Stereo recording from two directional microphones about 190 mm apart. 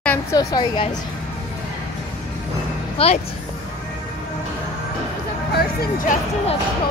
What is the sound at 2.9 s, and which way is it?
Speech, 30° left (ahead or behind).